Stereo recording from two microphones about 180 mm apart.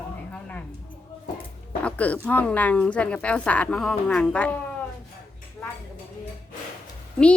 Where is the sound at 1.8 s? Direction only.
10° left (ahead or behind).